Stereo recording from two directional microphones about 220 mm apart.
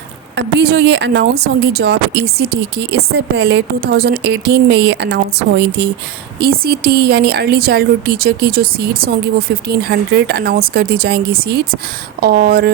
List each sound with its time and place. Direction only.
0.3 s speech: 50° right (ahead or behind)